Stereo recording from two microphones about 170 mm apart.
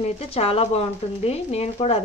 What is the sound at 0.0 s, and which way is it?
Speech, 35° left (ahead or behind).